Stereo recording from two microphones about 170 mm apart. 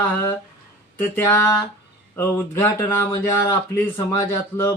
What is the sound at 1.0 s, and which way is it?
Speech, 15° left (ahead or behind).